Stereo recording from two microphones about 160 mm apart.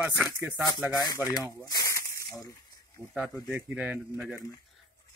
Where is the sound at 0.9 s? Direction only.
25° left (ahead or behind).